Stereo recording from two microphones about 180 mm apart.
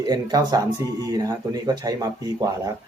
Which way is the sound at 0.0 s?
20° right (ahead or behind).